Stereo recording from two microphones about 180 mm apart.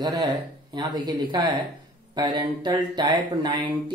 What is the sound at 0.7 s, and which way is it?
Speech, 25° right (ahead or behind).